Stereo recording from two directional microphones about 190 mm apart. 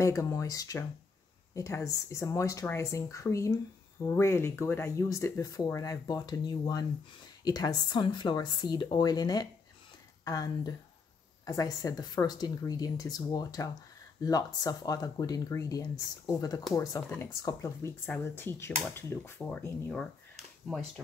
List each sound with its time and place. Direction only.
0.0 s speech: 15° left (ahead or behind)